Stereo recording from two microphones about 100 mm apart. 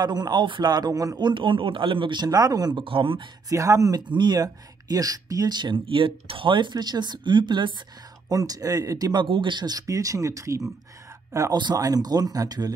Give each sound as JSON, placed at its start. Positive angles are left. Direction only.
{"t": 0.0, "sound": "speech", "side_deg": -45}
{"t": 1.3, "sound": "speech", "side_deg": -55}
{"t": 2.8, "sound": "speech", "side_deg": -60}
{"t": 3.4, "sound": "speech", "side_deg": -35}
{"t": 8.3, "sound": "speech", "side_deg": -35}
{"t": 11.5, "sound": "speech", "side_deg": -40}